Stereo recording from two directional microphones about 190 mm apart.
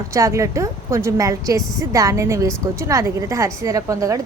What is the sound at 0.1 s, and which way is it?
A woman's voice, 15° right (ahead or behind).